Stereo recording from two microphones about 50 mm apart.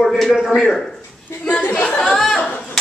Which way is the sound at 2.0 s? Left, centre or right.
Centre.